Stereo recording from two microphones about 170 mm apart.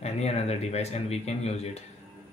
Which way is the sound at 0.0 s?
40° left (ahead or behind).